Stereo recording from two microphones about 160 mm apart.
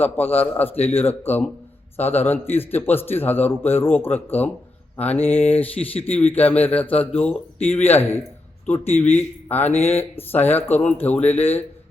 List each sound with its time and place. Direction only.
0.0 s a man's voice: 10° left (ahead or behind)
5.9 s speech: 35° left (ahead or behind)
6.1 s a man's voice: 10° left (ahead or behind)